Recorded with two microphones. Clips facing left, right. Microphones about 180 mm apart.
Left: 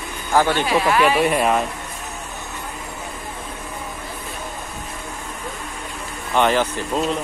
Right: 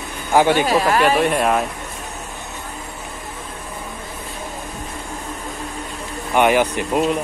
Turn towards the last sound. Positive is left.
turn(degrees=-15)  # may be behind; listen again after turning